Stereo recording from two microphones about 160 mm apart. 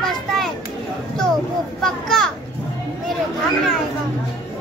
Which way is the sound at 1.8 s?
5° left (ahead or behind).